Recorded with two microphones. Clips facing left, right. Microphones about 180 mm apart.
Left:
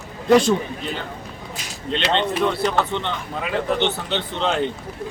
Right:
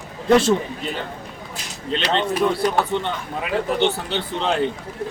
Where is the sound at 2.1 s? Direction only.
5° right (ahead or behind).